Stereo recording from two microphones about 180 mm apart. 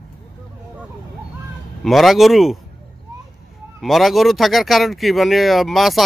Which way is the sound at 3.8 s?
Centre (ahead or behind).